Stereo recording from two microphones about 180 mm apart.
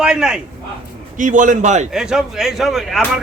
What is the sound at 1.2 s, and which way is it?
Speech, 45° right (ahead or behind).